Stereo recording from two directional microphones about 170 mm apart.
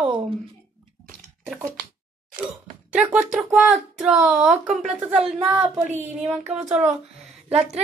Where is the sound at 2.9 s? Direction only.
5° right (ahead or behind).